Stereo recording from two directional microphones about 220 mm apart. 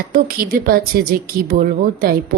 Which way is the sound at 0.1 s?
40° right (ahead or behind).